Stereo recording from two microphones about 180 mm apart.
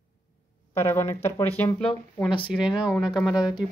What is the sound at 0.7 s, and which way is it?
Speech, 15° left (ahead or behind).